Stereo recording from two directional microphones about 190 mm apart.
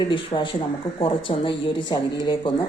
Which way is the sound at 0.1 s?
25° left (ahead or behind).